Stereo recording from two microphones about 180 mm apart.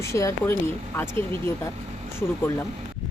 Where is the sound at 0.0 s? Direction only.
15° left (ahead or behind).